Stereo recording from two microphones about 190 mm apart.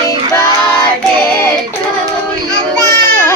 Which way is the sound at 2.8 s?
15° left (ahead or behind).